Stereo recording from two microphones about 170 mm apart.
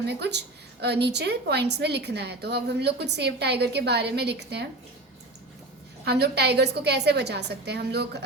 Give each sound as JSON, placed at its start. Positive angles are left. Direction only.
{"t": 0.2, "sound": "a woman's voice", "side_deg": -80}
{"t": 6.1, "sound": "a woman's voice", "side_deg": -75}